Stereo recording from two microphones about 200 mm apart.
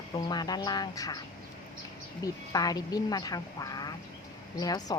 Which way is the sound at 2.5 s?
20° left (ahead or behind).